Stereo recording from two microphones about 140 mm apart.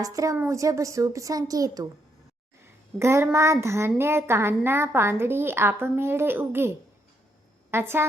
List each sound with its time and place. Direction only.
0.0 s speech: 25° right (ahead or behind)
3.0 s a child's voice: 20° right (ahead or behind)